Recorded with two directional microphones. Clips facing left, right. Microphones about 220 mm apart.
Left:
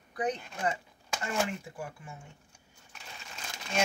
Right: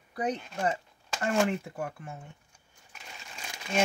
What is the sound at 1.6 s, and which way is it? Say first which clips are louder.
Speech: right 5 dB; 60° right (ahead or behind).